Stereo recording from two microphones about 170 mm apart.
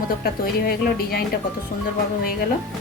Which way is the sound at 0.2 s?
65° left (ahead or behind).